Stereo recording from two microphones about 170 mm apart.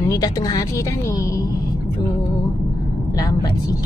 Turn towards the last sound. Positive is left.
turn(degrees=20)  # may be behind; listen again after turning